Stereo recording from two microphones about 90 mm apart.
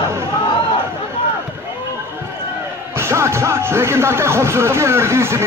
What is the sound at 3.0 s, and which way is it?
Speech, 30° right (ahead or behind).